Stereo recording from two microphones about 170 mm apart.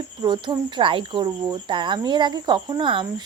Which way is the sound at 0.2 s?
25° right (ahead or behind).